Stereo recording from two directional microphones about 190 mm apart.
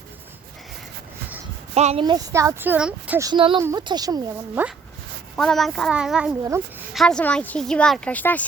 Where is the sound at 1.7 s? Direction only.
35° right (ahead or behind).